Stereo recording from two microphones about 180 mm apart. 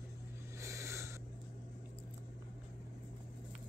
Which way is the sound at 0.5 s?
15° right (ahead or behind).